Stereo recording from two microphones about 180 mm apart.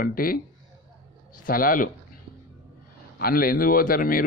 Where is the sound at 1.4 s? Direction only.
50° left (ahead or behind).